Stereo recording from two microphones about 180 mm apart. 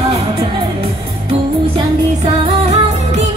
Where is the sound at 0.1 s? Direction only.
35° right (ahead or behind).